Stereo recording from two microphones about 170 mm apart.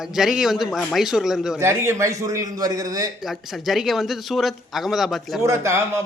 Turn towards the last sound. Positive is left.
turn(degrees=-15)  # may be behind; listen again after turning